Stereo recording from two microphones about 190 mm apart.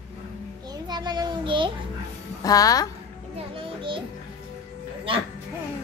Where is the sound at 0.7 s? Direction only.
20° right (ahead or behind).